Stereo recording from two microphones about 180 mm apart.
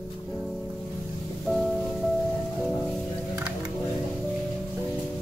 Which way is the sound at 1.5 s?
Centre (ahead or behind).